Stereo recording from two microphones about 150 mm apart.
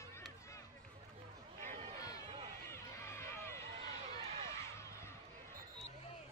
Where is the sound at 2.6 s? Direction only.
20° left (ahead or behind).